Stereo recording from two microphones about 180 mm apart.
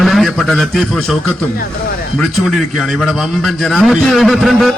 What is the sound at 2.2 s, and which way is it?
A man's voice, centre (ahead or behind).